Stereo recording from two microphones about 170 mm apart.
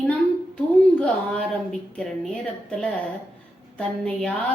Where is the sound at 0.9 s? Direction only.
5° left (ahead or behind).